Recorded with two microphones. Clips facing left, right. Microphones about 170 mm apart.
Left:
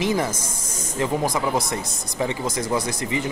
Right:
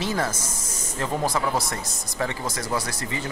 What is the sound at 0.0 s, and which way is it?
Speech, 15° left (ahead or behind).